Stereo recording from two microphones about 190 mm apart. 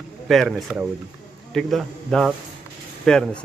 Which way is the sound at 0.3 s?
Centre (ahead or behind).